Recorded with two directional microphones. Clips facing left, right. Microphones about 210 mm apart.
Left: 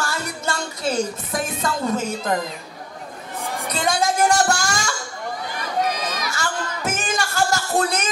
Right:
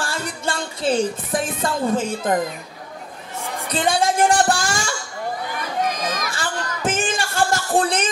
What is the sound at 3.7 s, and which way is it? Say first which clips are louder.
Music: right 2 dB; 30° right (ahead or behind).